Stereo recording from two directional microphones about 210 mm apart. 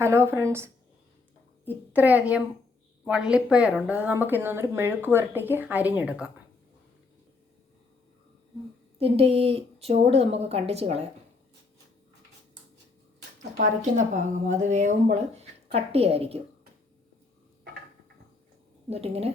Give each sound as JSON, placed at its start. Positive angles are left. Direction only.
{"t": 0.0, "sound": "speech", "side_deg": -10}
{"t": 9.0, "sound": "a woman's voice", "side_deg": -30}
{"t": 13.6, "sound": "a woman's voice", "side_deg": -35}
{"t": 18.9, "sound": "a woman's voice", "side_deg": -30}